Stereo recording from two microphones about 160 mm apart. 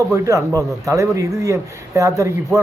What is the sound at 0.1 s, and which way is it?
Speech, 20° right (ahead or behind).